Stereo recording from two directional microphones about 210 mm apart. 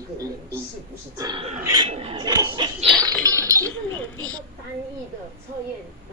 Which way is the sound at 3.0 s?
15° right (ahead or behind).